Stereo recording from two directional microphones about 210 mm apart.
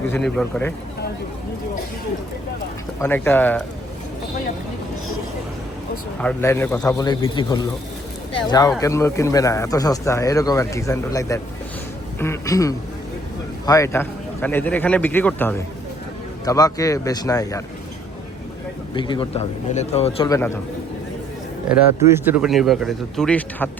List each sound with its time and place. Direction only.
0.1 s speech: 5° left (ahead or behind)
3.0 s speech: 10° left (ahead or behind)
6.1 s a man's voice: 10° left (ahead or behind)
18.9 s a man's voice: 20° left (ahead or behind)
20.2 s speech: 15° left (ahead or behind)
21.7 s speech: 10° right (ahead or behind); by 23.6 s 5° left (ahead or behind)